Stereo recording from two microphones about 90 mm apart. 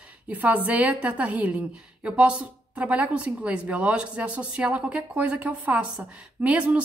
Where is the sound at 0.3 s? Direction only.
15° right (ahead or behind).